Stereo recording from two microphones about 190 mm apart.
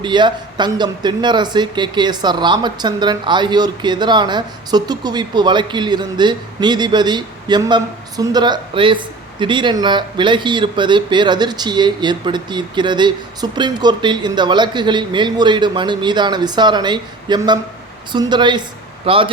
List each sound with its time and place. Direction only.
0.0 s speech: 25° right (ahead or behind)